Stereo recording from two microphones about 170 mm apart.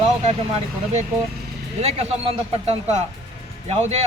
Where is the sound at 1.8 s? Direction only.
35° right (ahead or behind).